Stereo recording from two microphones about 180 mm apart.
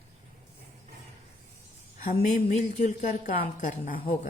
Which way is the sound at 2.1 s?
50° left (ahead or behind).